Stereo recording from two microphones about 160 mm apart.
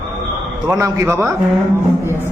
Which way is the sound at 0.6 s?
20° right (ahead or behind).